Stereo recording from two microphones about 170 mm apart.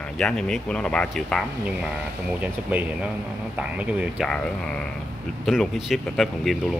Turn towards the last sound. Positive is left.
turn(degrees=0)  # may be behind; listen again after turning